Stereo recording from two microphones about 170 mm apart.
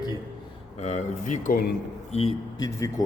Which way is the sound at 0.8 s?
45° left (ahead or behind).